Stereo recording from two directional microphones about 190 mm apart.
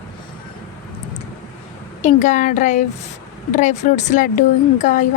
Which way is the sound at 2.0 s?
40° left (ahead or behind).